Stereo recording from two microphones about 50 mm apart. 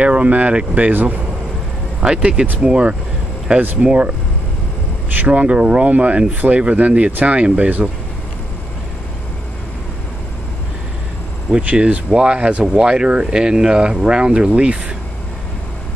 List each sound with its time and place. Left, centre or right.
0.0 s speech: right
2.0 s speech: centre
5.2 s speech: right
11.5 s speech: right